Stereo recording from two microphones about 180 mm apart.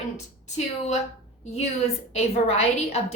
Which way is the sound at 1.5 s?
35° left (ahead or behind).